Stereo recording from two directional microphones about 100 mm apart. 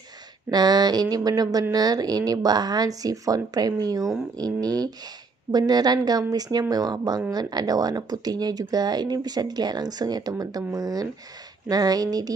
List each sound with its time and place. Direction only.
0.5 s speech: 45° right (ahead or behind)